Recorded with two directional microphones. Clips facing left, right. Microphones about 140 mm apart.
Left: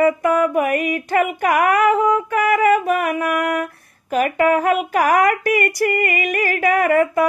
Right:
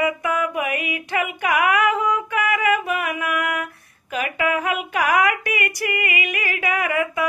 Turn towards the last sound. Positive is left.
turn(degrees=45)  # may be behind; listen again after turning